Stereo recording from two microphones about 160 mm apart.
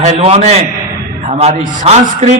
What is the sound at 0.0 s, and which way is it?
A man's voice, 40° right (ahead or behind).